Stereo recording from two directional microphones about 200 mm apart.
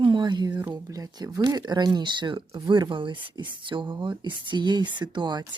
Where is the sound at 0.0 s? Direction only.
20° right (ahead or behind).